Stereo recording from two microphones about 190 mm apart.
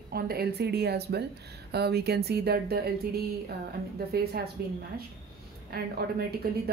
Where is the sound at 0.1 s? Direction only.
55° right (ahead or behind).